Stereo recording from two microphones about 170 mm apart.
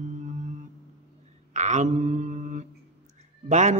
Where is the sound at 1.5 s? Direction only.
45° right (ahead or behind).